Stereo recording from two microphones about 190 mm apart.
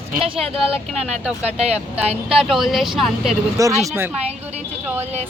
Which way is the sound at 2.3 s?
Centre (ahead or behind).